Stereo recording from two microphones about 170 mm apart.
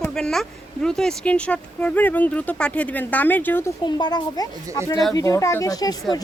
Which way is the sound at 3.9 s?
25° left (ahead or behind).